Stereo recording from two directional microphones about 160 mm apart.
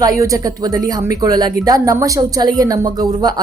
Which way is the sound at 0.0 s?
20° right (ahead or behind).